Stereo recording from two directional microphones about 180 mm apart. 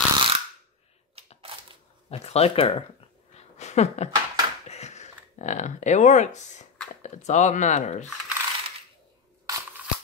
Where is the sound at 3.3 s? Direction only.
40° left (ahead or behind).